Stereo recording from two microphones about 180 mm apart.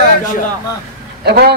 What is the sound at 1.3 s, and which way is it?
Speech, 60° right (ahead or behind).